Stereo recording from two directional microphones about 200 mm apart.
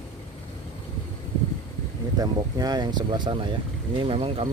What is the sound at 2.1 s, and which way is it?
Speech, 20° right (ahead or behind).